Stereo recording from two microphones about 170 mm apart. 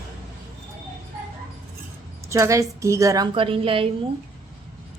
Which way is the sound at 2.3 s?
20° right (ahead or behind).